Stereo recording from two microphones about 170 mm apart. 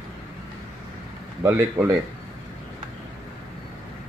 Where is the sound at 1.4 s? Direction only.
10° right (ahead or behind).